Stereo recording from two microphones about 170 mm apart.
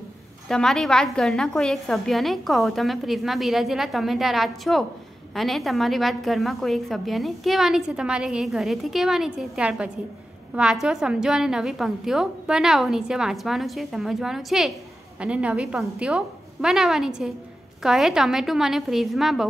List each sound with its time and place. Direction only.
0.5 s a woman's voice: 5° left (ahead or behind)